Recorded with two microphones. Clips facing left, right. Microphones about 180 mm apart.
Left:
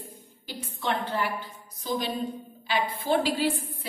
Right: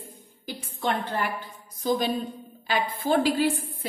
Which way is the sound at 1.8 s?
55° right (ahead or behind).